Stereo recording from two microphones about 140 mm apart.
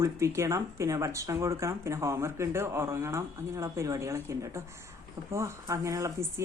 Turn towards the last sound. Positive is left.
turn(degrees=-25)  # may be behind; listen again after turning